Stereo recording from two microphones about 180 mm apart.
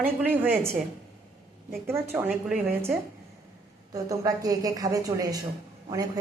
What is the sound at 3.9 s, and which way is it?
A woman's voice, 20° right (ahead or behind).